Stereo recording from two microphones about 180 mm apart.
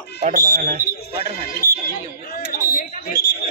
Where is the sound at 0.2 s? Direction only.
50° right (ahead or behind).